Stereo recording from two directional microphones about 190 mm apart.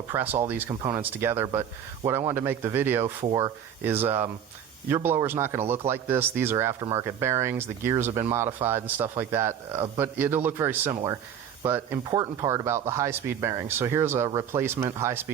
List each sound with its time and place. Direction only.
0.1 s speech: 10° right (ahead or behind)